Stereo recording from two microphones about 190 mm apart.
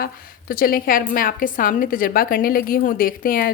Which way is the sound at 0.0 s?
50° left (ahead or behind).